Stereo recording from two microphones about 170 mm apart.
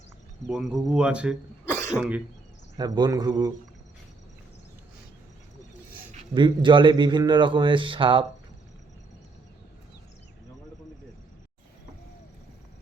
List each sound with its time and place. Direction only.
0.4 s speech: 5° right (ahead or behind)
1.9 s throat clearing: 10° right (ahead or behind)
2.7 s speech: 25° right (ahead or behind)
6.3 s speech: 30° right (ahead or behind)